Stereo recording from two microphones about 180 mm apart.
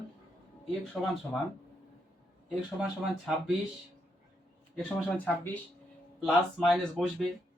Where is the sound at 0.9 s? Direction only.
10° left (ahead or behind).